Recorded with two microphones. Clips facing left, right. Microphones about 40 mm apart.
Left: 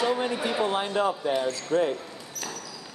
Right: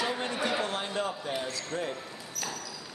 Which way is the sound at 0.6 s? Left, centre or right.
Centre.